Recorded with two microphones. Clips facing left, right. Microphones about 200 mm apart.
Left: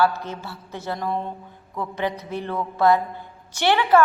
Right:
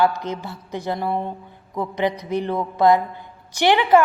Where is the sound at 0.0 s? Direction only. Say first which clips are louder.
Right 2 dB; 15° right (ahead or behind).